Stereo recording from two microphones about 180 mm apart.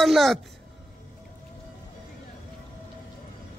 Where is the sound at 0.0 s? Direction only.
Centre (ahead or behind).